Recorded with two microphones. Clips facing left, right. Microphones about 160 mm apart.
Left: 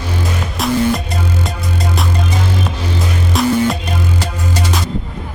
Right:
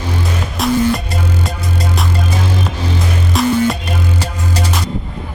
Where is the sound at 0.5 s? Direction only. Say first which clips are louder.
Right 1 dB; centre (ahead or behind).